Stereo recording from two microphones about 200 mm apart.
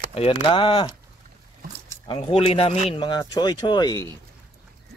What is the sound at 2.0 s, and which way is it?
Speech, 25° left (ahead or behind).